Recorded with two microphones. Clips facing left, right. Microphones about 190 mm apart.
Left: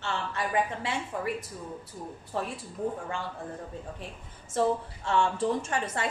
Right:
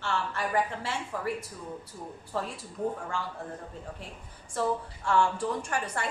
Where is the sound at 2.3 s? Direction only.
20° left (ahead or behind).